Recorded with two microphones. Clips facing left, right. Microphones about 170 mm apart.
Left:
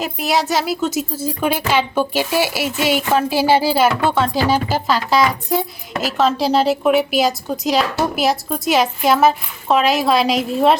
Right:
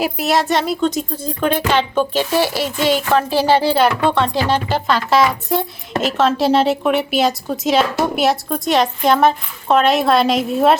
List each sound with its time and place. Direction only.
0.0 s speech: centre (ahead or behind)